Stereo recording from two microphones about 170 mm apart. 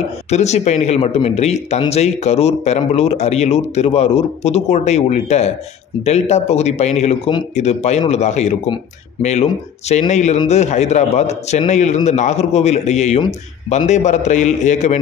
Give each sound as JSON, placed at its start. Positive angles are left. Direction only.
{"t": 0.3, "sound": "a man's voice", "side_deg": 40}